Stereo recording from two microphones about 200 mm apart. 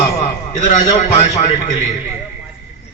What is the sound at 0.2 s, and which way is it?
A man's voice, 35° left (ahead or behind).